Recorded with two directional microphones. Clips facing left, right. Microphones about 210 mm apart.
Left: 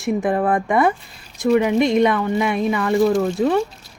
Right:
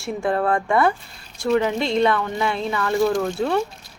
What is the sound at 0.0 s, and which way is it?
A woman's voice, 20° left (ahead or behind).